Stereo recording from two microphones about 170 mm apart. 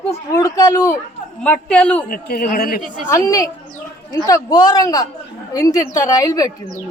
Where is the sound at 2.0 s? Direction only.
60° left (ahead or behind).